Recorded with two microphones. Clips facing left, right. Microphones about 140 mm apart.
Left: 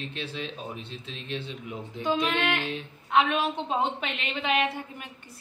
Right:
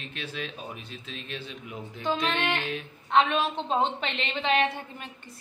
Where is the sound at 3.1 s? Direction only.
10° left (ahead or behind).